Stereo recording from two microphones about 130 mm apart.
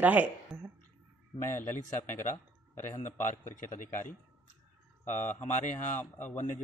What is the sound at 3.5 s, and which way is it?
Speech, 85° left.